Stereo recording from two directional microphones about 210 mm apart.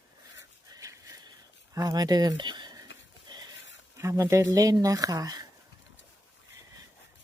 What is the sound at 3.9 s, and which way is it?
Speech, 15° right (ahead or behind).